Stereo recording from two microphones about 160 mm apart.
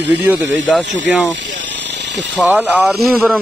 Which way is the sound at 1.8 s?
90° right.